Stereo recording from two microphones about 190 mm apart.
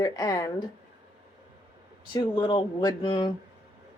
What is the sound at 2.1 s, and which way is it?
Speech, 25° left (ahead or behind).